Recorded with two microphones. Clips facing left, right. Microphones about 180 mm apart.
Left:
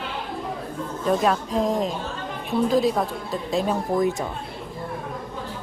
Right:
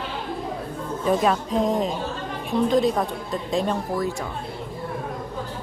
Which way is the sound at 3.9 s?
20° left (ahead or behind).